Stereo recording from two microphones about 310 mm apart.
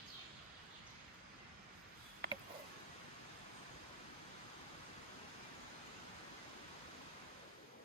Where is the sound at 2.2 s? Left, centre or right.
Right.